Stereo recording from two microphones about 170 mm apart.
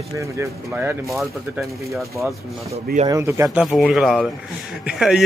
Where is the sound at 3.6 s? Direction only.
Centre (ahead or behind).